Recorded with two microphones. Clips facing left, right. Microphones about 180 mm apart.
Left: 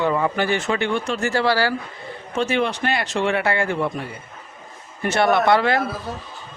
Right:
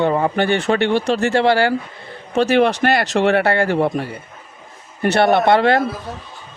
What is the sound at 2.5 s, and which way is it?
Speech, 75° right (ahead or behind).